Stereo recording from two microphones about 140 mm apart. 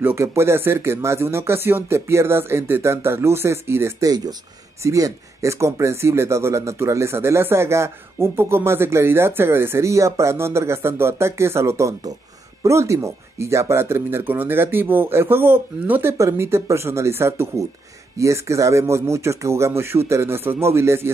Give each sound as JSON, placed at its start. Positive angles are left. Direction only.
{"t": 0.0, "sound": "speech", "side_deg": -20}